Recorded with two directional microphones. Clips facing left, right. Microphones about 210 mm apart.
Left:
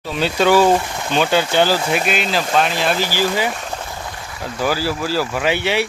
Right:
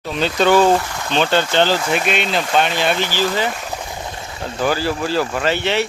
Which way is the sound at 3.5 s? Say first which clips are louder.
Even; 5° right (ahead or behind).